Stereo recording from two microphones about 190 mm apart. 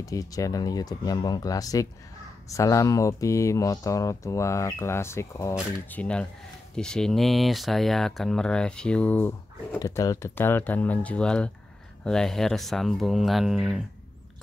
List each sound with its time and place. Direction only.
0.0 s speech: 20° left (ahead or behind)
9.8 s speech: 20° left (ahead or behind); by 13.8 s centre (ahead or behind)